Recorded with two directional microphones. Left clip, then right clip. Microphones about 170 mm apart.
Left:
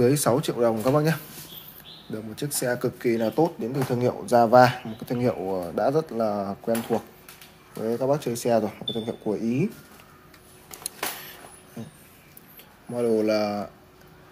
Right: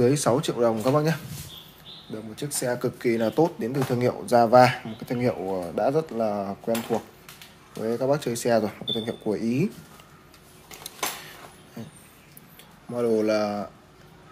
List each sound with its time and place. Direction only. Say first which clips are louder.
0.0 s speech: even; 10° left (ahead or behind)
0.7 s speech: even; 15° left (ahead or behind)
3.0 s speech: right 1 dB; 5° right (ahead or behind)
11.8 s dog: left 1 dB; centre (ahead or behind)
12.9 s speech: even; centre (ahead or behind)